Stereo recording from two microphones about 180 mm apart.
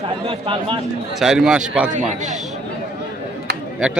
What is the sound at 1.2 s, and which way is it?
Speech, centre (ahead or behind).